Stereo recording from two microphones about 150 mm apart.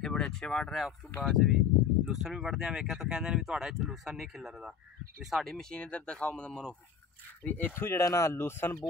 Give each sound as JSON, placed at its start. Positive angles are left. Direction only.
{"t": 0.0, "sound": "speech", "side_deg": 5}